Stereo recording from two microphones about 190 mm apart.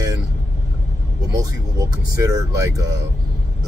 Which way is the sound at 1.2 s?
20° right (ahead or behind).